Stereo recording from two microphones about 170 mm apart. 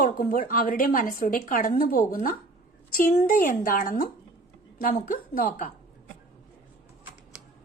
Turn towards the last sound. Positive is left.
turn(degrees=55)  # may be behind; listen again after turning